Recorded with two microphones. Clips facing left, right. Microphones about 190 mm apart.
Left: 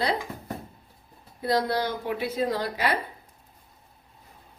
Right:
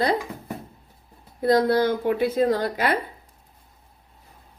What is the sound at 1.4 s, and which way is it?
A woman's voice, 50° right (ahead or behind).